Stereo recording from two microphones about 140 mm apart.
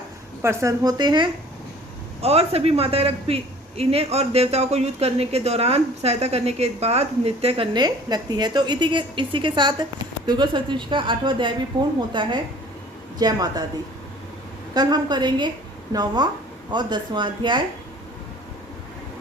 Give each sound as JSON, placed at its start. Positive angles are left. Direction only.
{"t": 0.4, "sound": "a woman's voice", "side_deg": -20}
{"t": 2.2, "sound": "a man's voice", "side_deg": -45}
{"t": 14.7, "sound": "a woman's voice", "side_deg": -30}